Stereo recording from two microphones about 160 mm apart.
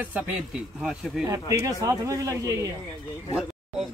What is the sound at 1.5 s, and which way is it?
A man's voice, 20° right (ahead or behind).